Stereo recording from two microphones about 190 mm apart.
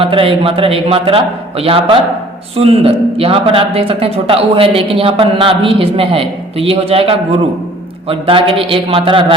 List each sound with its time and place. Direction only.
0.0 s a man's voice: 30° right (ahead or behind)